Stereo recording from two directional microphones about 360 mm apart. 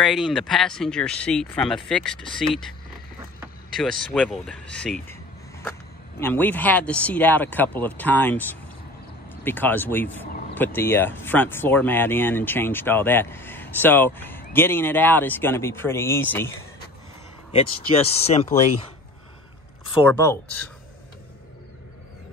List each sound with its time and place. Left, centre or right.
0.0 s speech: centre
20.1 s speech: centre